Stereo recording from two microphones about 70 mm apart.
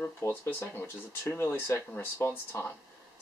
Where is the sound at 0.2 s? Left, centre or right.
Left.